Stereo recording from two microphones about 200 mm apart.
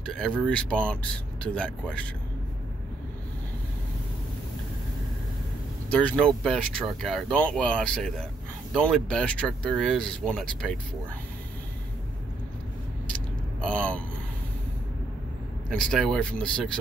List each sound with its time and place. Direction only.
0.0 s speech: 5° left (ahead or behind)
5.9 s speech: 5° left (ahead or behind)
13.6 s speech: 5° left (ahead or behind)
15.7 s speech: 5° left (ahead or behind)